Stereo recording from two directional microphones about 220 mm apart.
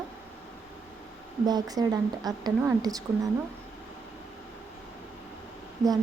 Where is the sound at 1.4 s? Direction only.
15° right (ahead or behind).